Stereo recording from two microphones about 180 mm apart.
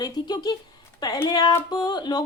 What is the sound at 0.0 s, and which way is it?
Speech, 20° left (ahead or behind).